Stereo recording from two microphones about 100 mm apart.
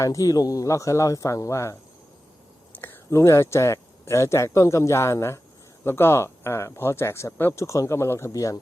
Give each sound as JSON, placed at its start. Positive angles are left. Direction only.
{"t": 0.0, "sound": "speech", "side_deg": 35}
{"t": 2.7, "sound": "speech", "side_deg": 20}